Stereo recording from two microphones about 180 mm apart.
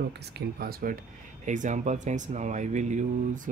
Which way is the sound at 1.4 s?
45° right (ahead or behind).